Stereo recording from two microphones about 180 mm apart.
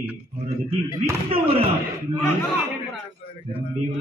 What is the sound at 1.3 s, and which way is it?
Speech, 30° right (ahead or behind).